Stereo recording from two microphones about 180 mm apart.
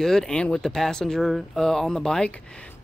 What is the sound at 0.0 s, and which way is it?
Speech, centre (ahead or behind).